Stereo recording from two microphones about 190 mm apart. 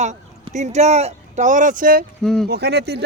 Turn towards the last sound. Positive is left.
turn(degrees=-60)  # may be behind; listen again after turning